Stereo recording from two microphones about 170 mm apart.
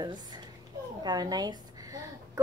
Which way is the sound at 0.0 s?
25° right (ahead or behind).